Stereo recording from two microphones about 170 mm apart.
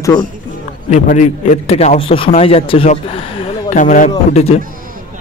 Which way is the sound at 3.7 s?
50° left (ahead or behind).